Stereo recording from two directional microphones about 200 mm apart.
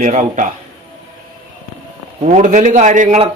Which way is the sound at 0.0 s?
35° right (ahead or behind).